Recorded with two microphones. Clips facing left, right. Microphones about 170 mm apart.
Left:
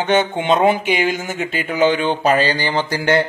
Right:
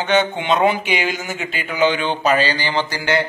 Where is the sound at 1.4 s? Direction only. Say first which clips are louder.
Left 2 dB; 45° left (ahead or behind).